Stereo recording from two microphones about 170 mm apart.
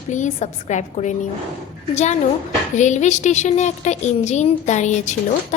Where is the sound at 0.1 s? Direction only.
45° left (ahead or behind).